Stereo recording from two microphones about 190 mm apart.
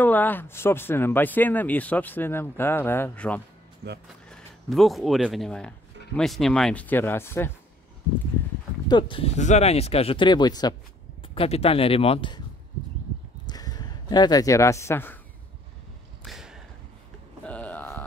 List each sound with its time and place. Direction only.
0.0 s speech: 10° left (ahead or behind)
3.8 s speech: 55° right (ahead or behind)
4.3 s speech: centre (ahead or behind)
8.8 s speech: 25° left (ahead or behind)
13.5 s a man's voice: 20° left (ahead or behind)
16.3 s a sound: centre (ahead or behind)